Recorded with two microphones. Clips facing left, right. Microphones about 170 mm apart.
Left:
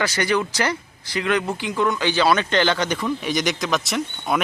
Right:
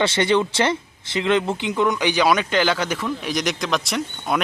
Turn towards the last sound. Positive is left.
turn(degrees=0)  # may be behind; listen again after turning